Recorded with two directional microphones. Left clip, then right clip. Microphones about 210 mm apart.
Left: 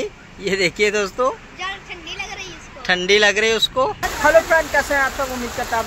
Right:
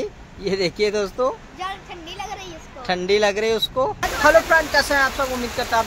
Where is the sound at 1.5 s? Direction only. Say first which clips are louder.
Left 2 dB; 60° right (ahead or behind).